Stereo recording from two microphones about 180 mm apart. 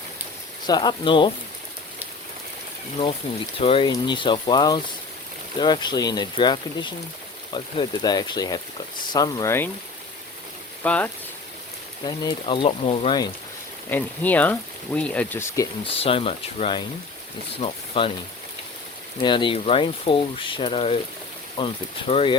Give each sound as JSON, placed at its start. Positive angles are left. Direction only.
{"t": 0.7, "sound": "speech", "side_deg": 25}
{"t": 3.6, "sound": "speech", "side_deg": 30}
{"t": 10.8, "sound": "speech", "side_deg": 5}
{"t": 12.0, "sound": "speech", "side_deg": 25}
{"t": 13.9, "sound": "speech", "side_deg": 10}
{"t": 16.0, "sound": "speech", "side_deg": 30}
{"t": 19.2, "sound": "speech", "side_deg": 25}